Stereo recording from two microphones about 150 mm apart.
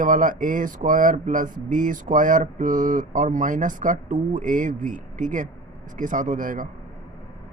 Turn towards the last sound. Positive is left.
turn(degrees=-65)  # may be behind; listen again after turning